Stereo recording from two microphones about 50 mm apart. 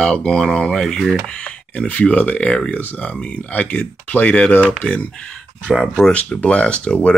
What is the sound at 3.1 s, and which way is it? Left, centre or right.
Speech, left.